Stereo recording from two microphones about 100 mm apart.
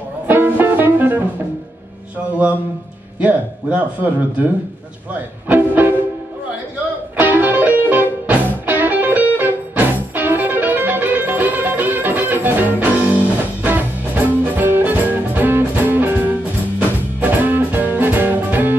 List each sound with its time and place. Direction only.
0.3 s music: 20° right (ahead or behind)
3.2 s a man's voice: 15° right (ahead or behind)
5.5 s music: 20° right (ahead or behind)
7.2 s music: 20° right (ahead or behind)
17.2 s music: 20° right (ahead or behind)